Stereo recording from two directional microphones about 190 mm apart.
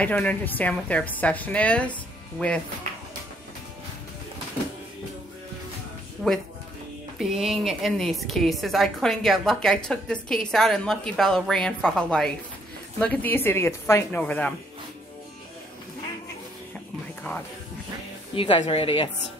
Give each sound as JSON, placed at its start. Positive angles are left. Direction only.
{"t": 0.0, "sound": "a woman's voice", "side_deg": 10}
{"t": 6.2, "sound": "a woman's voice", "side_deg": 0}
{"t": 17.3, "sound": "speech", "side_deg": 10}
{"t": 18.3, "sound": "a woman's voice", "side_deg": 30}